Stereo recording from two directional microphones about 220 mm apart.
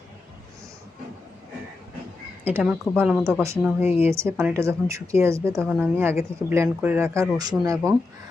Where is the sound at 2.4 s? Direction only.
5° right (ahead or behind).